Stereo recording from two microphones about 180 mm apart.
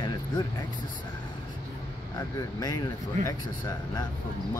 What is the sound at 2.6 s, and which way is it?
Speech, 20° left (ahead or behind).